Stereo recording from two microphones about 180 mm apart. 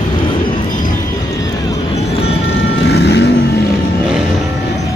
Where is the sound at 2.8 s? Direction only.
65° left (ahead or behind).